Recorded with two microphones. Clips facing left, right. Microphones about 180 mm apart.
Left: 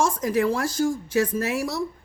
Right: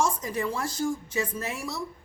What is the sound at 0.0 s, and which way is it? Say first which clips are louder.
A woman's voice: left 6 dB; 75° left (ahead or behind).